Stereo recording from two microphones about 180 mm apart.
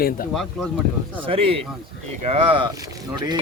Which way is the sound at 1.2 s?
30° right (ahead or behind).